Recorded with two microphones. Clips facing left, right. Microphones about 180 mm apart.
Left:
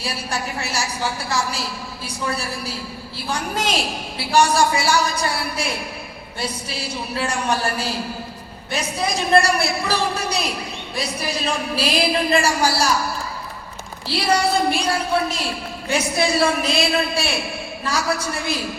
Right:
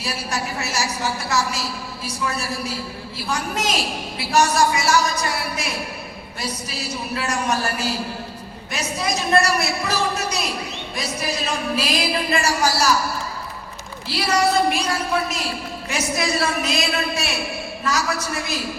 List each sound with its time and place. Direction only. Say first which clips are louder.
0.0 s a woman's voice: even; 35° left (ahead or behind)
8.7 s a woman's voice: left 1 dB; 35° left (ahead or behind)
11.4 s a woman's voice: left 2 dB; 30° left (ahead or behind)
14.1 s a woman's voice: even; 30° left (ahead or behind)